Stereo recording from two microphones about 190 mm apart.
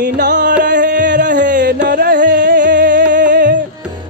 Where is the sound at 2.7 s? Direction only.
65° right (ahead or behind).